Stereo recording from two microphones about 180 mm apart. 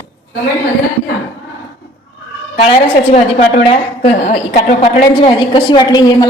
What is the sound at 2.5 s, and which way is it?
A woman's voice, 35° left (ahead or behind).